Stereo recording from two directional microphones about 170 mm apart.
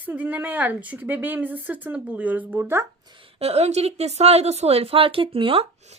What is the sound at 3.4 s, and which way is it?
A woman's voice, 40° right (ahead or behind).